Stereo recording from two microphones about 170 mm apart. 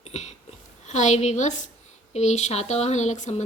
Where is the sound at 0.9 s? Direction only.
40° left (ahead or behind).